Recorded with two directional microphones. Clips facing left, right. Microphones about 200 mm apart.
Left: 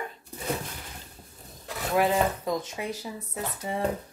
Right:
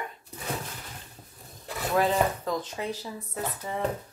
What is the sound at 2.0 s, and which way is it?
Speech, 15° left (ahead or behind).